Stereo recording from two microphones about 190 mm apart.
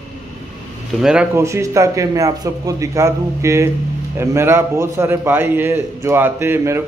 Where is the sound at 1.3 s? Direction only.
15° right (ahead or behind).